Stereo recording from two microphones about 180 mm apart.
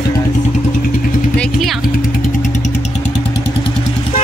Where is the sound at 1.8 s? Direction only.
45° left (ahead or behind).